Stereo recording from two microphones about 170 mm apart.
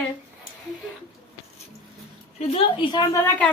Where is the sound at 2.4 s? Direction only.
30° left (ahead or behind).